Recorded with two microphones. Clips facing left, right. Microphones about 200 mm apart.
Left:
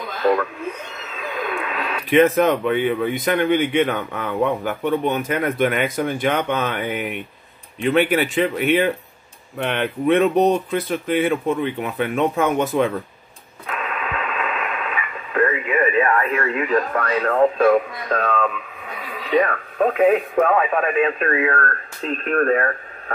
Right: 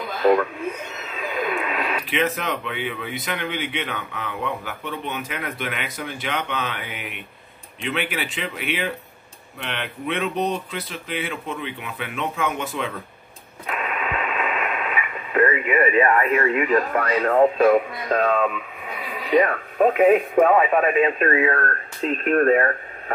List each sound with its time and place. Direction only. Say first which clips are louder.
1.1 s radio: right 1 dB; 10° right (ahead or behind)
2.0 s speech: left 13 dB; 45° left (ahead or behind)
13.7 s radio: even; 10° right (ahead or behind)
19.0 s speech: even; 10° right (ahead or behind)